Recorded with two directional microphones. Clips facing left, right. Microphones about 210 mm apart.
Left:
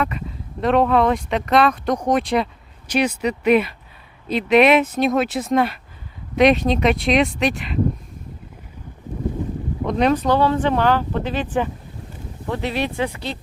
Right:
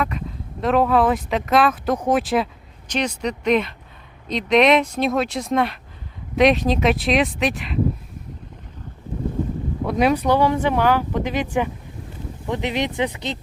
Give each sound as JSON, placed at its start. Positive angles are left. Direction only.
{"t": 0.0, "sound": "speech", "side_deg": 0}
{"t": 2.8, "sound": "speech", "side_deg": 10}
{"t": 9.8, "sound": "speech", "side_deg": -10}